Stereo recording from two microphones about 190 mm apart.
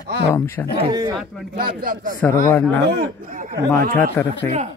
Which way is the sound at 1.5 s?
50° right (ahead or behind).